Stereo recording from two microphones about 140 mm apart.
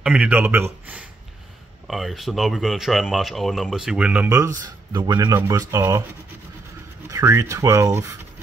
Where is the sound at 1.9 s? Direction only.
Centre (ahead or behind); by 4.5 s 20° right (ahead or behind).